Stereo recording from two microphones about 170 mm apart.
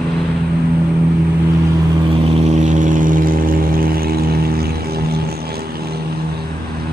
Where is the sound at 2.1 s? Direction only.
35° right (ahead or behind); by 5.3 s 65° right (ahead or behind).